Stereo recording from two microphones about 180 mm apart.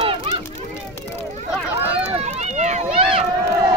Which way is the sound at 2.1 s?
35° right (ahead or behind).